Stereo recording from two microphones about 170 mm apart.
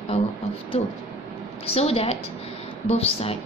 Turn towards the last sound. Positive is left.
turn(degrees=35)  # may be behind; listen again after turning